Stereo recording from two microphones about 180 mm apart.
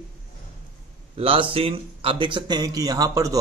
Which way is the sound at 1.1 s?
30° right (ahead or behind).